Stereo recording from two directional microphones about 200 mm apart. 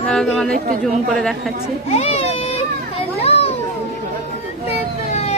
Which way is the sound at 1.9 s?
35° left (ahead or behind).